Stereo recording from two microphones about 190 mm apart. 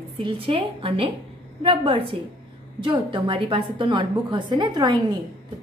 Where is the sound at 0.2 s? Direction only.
25° right (ahead or behind).